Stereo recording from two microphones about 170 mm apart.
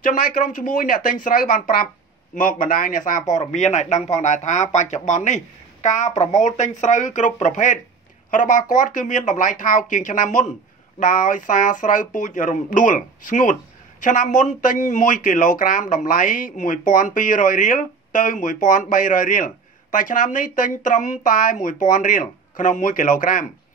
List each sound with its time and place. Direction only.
0.0 s speech: 55° left (ahead or behind)